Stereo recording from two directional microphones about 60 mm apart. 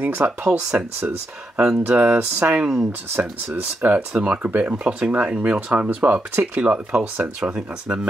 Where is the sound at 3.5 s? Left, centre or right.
Right.